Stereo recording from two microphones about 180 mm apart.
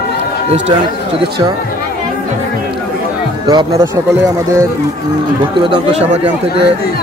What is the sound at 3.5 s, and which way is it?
Speech, 25° right (ahead or behind).